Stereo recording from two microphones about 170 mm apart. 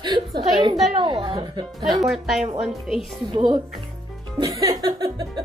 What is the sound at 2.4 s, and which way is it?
Speech, 40° right (ahead or behind).